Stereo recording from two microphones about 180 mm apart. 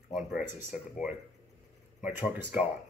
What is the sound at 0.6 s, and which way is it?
Speech, 45° left (ahead or behind).